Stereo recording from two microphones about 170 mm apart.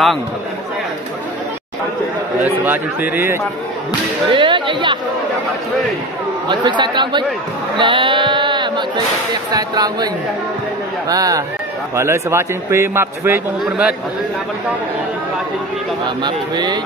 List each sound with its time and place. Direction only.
2.4 s a man's voice: 10° right (ahead or behind)
4.3 s speech: 30° right (ahead or behind)
6.5 s speech: 25° right (ahead or behind)
11.1 s a man's voice: 20° right (ahead or behind)
16.2 s speech: 25° right (ahead or behind)